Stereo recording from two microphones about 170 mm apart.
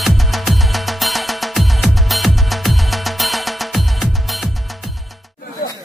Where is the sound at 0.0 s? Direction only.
Centre (ahead or behind).